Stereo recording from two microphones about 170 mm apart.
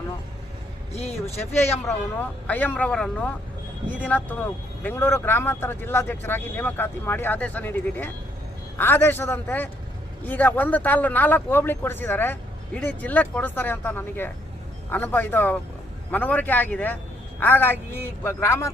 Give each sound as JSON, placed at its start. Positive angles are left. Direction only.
{"t": 0.9, "sound": "speech", "side_deg": 40}
{"t": 2.1, "sound": "speech", "side_deg": 10}